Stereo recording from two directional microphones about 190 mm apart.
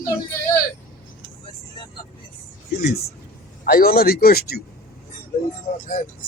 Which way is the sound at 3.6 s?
50° left (ahead or behind).